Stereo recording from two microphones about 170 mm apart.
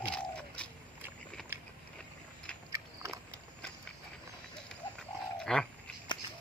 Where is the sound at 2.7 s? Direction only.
20° right (ahead or behind).